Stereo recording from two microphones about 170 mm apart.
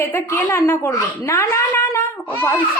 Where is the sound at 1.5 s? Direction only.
15° left (ahead or behind).